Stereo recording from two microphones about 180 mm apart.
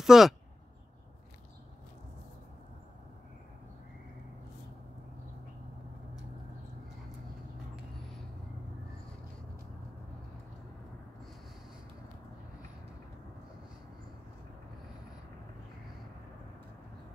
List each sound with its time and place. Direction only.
0.0 s speech: centre (ahead or behind)